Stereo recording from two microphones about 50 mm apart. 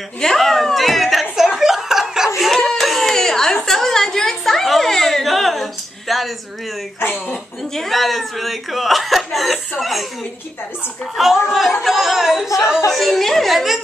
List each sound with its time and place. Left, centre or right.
0.2 s a sound: centre
1.6 s snicker: centre
2.7 s a sound: centre
7.0 s speech: left
7.7 s speech: centre
11.2 s speech: centre